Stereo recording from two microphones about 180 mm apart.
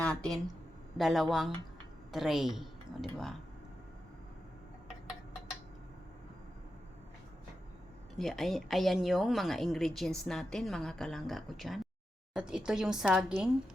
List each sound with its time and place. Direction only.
0.0 s a woman's voice: 5° left (ahead or behind)
8.2 s a woman's voice: centre (ahead or behind)